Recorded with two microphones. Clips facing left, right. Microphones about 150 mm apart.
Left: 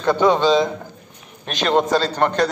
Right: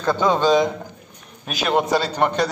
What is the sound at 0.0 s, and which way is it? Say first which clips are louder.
Speech: left 3 dB; 10° left (ahead or behind).